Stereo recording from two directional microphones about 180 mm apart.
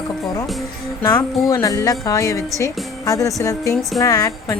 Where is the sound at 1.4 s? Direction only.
20° left (ahead or behind).